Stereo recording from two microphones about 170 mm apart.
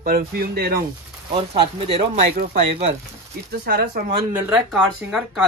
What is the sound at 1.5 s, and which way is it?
Speech, 35° right (ahead or behind).